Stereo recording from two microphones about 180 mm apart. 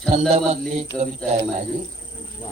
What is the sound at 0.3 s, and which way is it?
Mantra, 40° right (ahead or behind).